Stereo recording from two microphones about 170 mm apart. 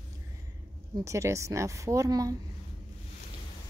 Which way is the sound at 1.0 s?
15° right (ahead or behind).